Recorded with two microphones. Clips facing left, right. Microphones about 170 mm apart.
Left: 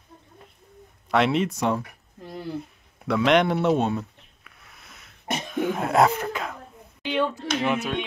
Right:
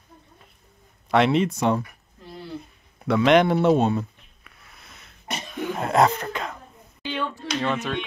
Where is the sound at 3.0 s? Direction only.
Centre (ahead or behind).